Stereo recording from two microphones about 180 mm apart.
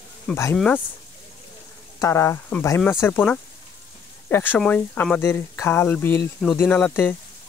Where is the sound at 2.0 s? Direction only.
15° left (ahead or behind).